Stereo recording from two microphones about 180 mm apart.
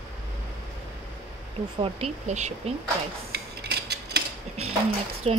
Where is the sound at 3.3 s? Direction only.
65° right (ahead or behind).